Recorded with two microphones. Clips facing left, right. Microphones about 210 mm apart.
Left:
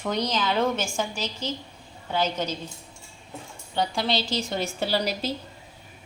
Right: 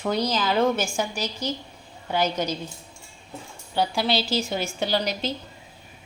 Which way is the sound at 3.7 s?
5° right (ahead or behind).